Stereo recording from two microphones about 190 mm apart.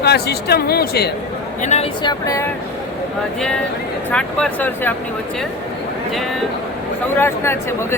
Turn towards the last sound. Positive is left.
turn(degrees=15)  # may be behind; listen again after turning